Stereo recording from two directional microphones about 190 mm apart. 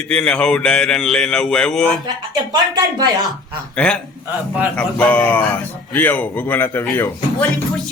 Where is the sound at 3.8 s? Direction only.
5° left (ahead or behind).